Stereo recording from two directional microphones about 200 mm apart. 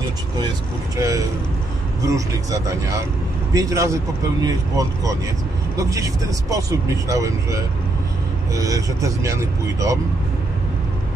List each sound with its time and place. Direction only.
0.9 s speech: 15° right (ahead or behind)